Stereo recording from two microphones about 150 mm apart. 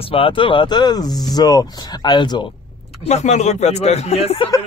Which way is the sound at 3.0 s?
45° left (ahead or behind).